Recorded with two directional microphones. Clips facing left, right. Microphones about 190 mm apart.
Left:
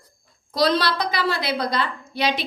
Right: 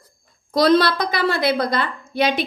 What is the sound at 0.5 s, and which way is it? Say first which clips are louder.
A woman's voice: right 5 dB; 50° right (ahead or behind).